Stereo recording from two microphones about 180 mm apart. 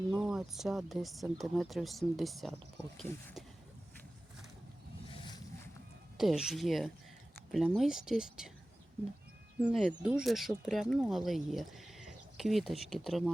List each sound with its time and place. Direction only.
0.1 s speech: 5° right (ahead or behind)
5.0 s boat: 25° left (ahead or behind)
6.1 s speech: 5° right (ahead or behind)
9.6 s speech: 5° right (ahead or behind)